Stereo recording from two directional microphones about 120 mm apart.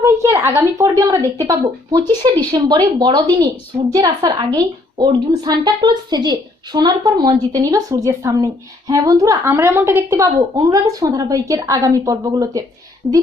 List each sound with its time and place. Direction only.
0.0 s a woman's voice: 25° right (ahead or behind)
13.0 s a woman's voice: 15° right (ahead or behind)